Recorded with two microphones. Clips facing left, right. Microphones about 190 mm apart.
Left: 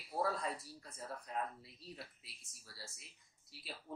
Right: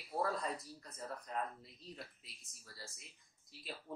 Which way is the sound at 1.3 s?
5° left (ahead or behind).